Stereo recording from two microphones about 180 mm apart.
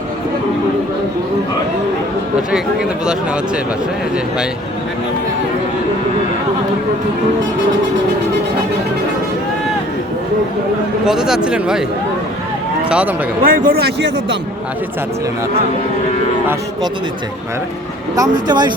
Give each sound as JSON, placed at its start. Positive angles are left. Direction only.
{"t": 11.0, "sound": "speech", "side_deg": -5}
{"t": 12.9, "sound": "speech", "side_deg": -5}
{"t": 13.4, "sound": "a man's voice", "side_deg": -50}
{"t": 18.2, "sound": "speech", "side_deg": -20}